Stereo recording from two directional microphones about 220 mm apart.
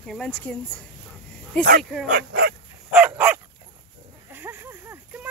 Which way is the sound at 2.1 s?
45° right (ahead or behind).